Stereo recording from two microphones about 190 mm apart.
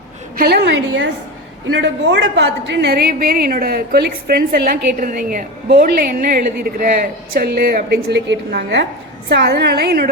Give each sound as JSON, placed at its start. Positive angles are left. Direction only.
{"t": 0.3, "sound": "a woman's voice", "side_deg": -55}